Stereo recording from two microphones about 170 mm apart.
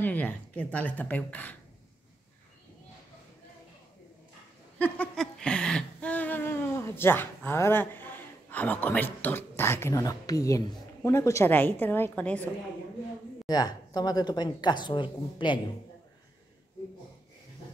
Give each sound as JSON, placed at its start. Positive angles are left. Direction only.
{"t": 0.0, "sound": "speech", "side_deg": 10}
{"t": 4.7, "sound": "a sound", "side_deg": 10}
{"t": 11.0, "sound": "speech", "side_deg": 15}
{"t": 13.5, "sound": "a woman's voice", "side_deg": 25}